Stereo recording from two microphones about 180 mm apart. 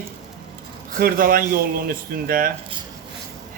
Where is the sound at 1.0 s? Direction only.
50° right (ahead or behind).